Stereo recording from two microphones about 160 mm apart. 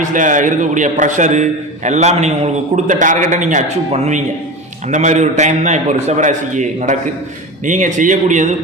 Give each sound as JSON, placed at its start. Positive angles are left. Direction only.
{"t": 0.0, "sound": "a man's voice", "side_deg": -55}